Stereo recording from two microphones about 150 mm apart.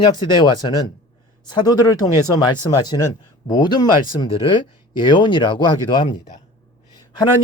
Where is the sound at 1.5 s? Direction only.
30° left (ahead or behind).